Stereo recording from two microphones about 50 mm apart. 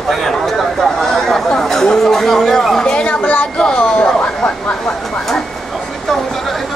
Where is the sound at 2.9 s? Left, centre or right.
Left.